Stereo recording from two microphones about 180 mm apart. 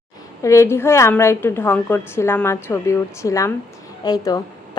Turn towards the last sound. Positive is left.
turn(degrees=20)  # may be behind; listen again after turning